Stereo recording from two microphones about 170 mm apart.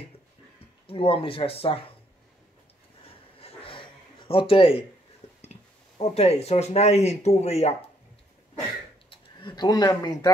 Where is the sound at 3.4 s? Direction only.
35° left (ahead or behind).